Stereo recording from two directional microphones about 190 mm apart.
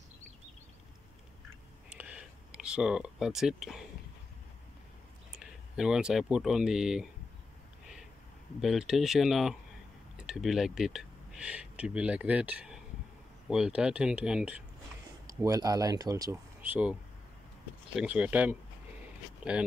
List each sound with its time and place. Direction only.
1.9 s a sound: 5° right (ahead or behind)
5.3 s speech: 5° right (ahead or behind)
8.5 s speech: centre (ahead or behind)
15.4 s speech: 20° right (ahead or behind)
17.9 s speech: 5° right (ahead or behind)